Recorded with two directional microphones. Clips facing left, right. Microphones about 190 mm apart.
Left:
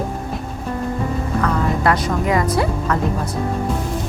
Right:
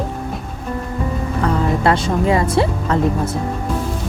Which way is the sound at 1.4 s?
25° right (ahead or behind).